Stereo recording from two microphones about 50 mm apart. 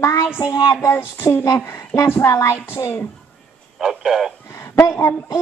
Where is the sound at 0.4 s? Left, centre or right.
Left.